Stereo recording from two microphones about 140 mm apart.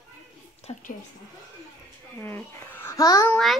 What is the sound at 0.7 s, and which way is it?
Speech, 45° left (ahead or behind).